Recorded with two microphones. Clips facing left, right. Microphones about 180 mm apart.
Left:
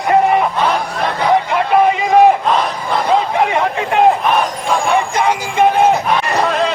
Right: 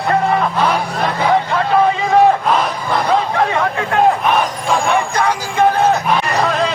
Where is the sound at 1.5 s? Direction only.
15° left (ahead or behind).